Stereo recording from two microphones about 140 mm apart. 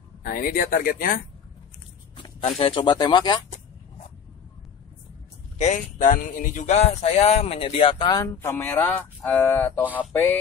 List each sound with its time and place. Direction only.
0.2 s speech: 85° left
2.4 s speech: 40° left (ahead or behind)
5.6 s speech: 65° left (ahead or behind); by 8.3 s 30° left (ahead or behind)
8.4 s speech: 20° left (ahead or behind)